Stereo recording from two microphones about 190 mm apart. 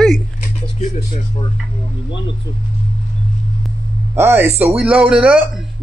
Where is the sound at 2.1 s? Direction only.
75° left (ahead or behind).